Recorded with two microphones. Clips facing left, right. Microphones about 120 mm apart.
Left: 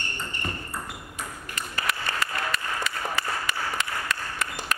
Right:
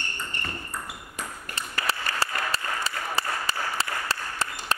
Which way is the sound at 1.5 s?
30° right (ahead or behind).